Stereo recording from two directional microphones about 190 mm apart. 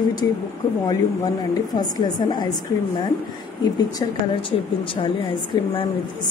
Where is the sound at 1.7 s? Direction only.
20° left (ahead or behind).